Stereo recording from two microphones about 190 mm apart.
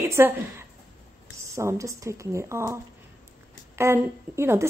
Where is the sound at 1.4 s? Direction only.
15° right (ahead or behind).